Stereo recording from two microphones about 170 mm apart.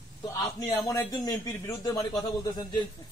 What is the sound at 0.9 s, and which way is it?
Speech, 20° left (ahead or behind).